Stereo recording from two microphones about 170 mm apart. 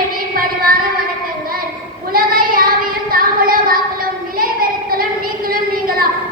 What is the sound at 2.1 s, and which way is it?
Child singing, 55° right (ahead or behind).